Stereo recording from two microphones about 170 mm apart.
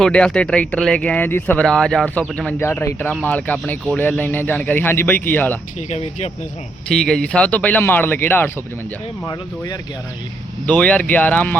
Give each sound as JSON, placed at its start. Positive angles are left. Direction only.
{"t": 0.0, "sound": "speech", "side_deg": 5}
{"t": 5.9, "sound": "speech", "side_deg": 40}
{"t": 6.8, "sound": "speech", "side_deg": 5}
{"t": 10.7, "sound": "speech", "side_deg": 10}